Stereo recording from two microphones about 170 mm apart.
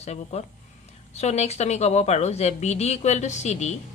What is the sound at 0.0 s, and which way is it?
A woman's voice, 40° left (ahead or behind).